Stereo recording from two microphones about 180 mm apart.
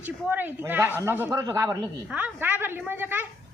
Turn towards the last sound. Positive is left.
turn(degrees=-10)  # may be behind; listen again after turning